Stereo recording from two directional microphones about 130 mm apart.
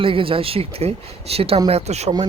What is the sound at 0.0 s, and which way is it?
Speech, 45° right (ahead or behind).